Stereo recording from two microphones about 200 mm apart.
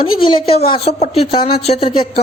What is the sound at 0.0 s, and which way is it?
Speech, 25° left (ahead or behind).